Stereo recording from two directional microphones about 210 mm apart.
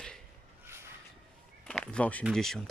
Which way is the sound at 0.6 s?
10° right (ahead or behind).